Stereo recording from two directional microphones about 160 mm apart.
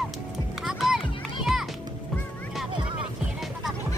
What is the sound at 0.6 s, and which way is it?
Children playing, 5° right (ahead or behind).